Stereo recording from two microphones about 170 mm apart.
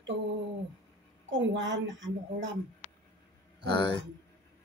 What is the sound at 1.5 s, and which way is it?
Speech, 90° right.